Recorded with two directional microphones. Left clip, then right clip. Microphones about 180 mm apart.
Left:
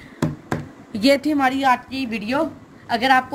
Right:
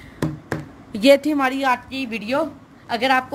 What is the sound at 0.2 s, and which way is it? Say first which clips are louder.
Speech: left 1 dB; 50° right (ahead or behind).